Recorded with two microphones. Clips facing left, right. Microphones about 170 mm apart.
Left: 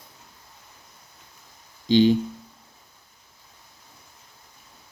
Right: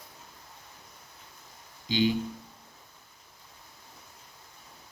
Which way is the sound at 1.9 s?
40° left (ahead or behind).